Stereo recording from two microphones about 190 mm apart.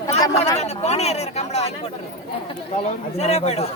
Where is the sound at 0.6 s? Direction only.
35° left (ahead or behind).